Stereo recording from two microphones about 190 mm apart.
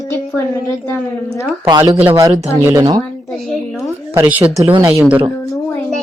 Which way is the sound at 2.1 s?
20° right (ahead or behind).